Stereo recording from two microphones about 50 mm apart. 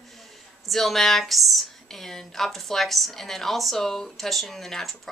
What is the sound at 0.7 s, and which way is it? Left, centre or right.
A woman's voice, centre.